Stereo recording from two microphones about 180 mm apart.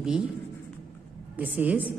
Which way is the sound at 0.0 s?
5° right (ahead or behind).